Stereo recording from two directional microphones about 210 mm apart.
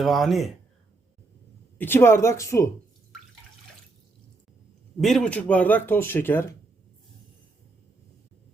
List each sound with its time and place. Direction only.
0.0 s speech: centre (ahead or behind)
1.8 s speech: 10° left (ahead or behind)
4.9 s speech: centre (ahead or behind)